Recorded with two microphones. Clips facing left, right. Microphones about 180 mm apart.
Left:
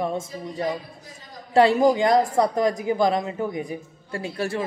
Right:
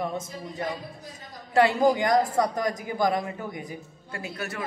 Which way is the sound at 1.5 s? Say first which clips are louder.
Left 4 dB; 25° left (ahead or behind).